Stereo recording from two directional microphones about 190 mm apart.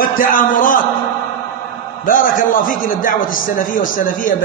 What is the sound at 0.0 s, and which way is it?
Speech, 50° left (ahead or behind).